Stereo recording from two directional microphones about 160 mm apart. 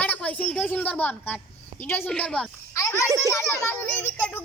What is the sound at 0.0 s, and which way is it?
A woman's voice, 10° left (ahead or behind).